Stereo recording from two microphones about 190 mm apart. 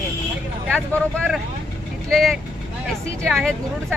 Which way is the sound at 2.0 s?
Centre (ahead or behind).